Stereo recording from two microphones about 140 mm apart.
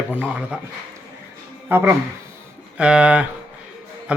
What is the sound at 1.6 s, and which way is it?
A man's voice, 15° right (ahead or behind).